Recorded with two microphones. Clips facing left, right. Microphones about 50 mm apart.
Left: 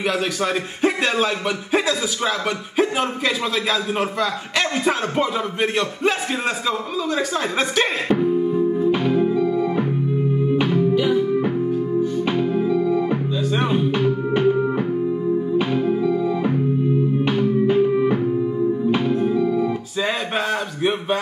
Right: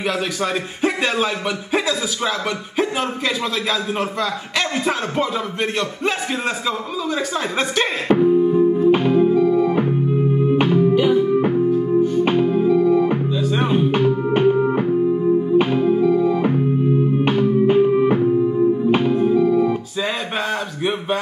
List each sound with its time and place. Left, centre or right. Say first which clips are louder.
0.4 s a man's voice: even; centre
8.5 s music: right 4 dB; right
9.6 s organ: right 3 dB; right
11.0 s music: right 3 dB; right
12.8 s organ: right 4 dB; right
13.7 s music: right 3 dB; right
17.2 s music: right 2 dB; right
19.3 s organ: right 4 dB; right
20.0 s a sound: left 1 dB; centre